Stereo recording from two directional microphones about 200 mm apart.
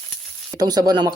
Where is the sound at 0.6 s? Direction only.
20° right (ahead or behind).